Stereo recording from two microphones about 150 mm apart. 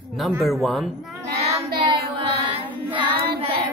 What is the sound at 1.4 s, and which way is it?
Child singing, 40° right (ahead or behind).